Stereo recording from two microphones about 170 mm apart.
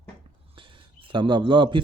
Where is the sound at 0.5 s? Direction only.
30° right (ahead or behind).